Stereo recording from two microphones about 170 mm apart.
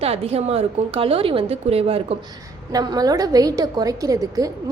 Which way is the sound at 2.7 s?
20° right (ahead or behind).